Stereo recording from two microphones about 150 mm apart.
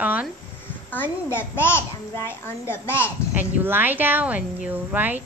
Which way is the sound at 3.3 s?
10° right (ahead or behind).